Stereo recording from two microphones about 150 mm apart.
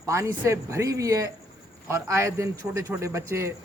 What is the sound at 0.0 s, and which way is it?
A man's voice, 20° right (ahead or behind).